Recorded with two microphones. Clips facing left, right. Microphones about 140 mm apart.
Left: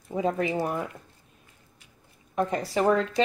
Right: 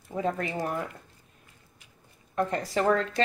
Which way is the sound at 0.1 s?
15° left (ahead or behind).